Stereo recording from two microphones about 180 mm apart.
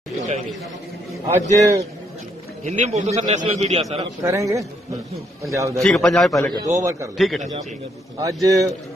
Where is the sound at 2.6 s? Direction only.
40° right (ahead or behind).